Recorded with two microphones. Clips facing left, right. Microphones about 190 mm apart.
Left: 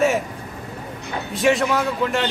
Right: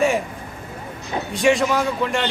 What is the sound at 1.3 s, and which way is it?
Speech, centre (ahead or behind).